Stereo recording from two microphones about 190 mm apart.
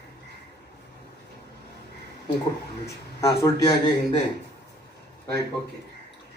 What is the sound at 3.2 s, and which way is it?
Speech, 15° left (ahead or behind).